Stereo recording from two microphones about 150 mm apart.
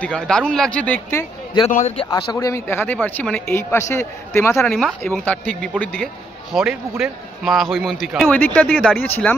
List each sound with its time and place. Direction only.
0.0 s speech: 5° left (ahead or behind)
1.7 s a man's voice: 60° left (ahead or behind)
2.3 s speech: 20° left (ahead or behind)
4.6 s a man's voice: 5° left (ahead or behind)
8.3 s speech: 10° left (ahead or behind)